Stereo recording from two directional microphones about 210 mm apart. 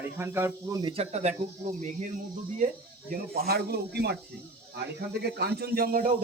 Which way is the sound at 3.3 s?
50° right (ahead or behind).